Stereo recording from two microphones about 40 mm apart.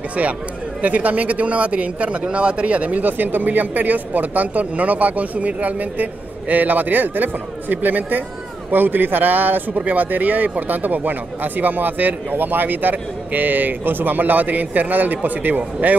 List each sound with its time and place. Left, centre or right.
0.8 s speech: right
9.8 s speech: right